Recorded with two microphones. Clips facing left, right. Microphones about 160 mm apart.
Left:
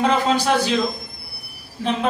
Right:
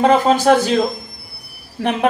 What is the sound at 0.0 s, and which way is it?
Speech, 45° right (ahead or behind).